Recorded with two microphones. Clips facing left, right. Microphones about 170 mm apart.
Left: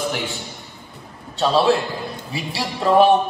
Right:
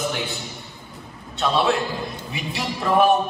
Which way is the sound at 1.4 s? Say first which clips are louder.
Left 4 dB; 35° left (ahead or behind).